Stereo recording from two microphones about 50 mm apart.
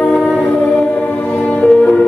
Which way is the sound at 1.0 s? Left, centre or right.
Left.